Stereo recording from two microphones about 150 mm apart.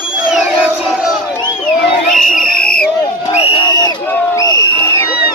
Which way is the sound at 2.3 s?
70° left (ahead or behind).